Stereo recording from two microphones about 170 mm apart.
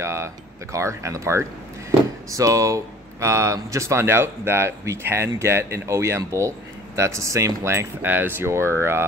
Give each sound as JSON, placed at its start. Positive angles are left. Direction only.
{"t": 0.0, "sound": "speech", "side_deg": -15}